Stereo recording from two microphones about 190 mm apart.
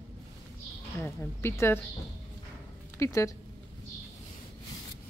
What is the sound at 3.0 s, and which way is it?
Speech, 15° left (ahead or behind).